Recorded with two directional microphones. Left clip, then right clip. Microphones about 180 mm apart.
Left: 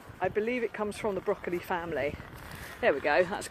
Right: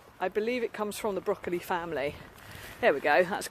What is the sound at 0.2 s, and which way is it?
Speech, 35° right (ahead or behind).